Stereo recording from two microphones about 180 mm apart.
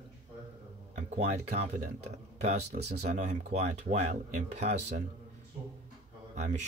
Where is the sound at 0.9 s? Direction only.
40° right (ahead or behind).